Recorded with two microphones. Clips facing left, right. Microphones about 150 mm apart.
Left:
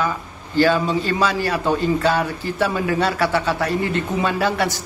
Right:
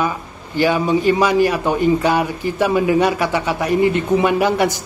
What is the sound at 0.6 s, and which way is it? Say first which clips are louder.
A man's voice: right 1 dB; 15° right (ahead or behind).